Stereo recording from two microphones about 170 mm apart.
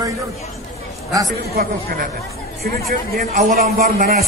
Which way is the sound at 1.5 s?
60° right (ahead or behind).